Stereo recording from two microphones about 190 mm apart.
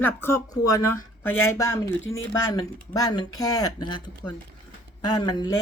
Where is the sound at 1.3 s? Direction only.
90° left.